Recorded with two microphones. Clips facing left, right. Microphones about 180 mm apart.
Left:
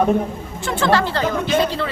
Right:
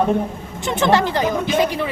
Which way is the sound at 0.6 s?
20° right (ahead or behind).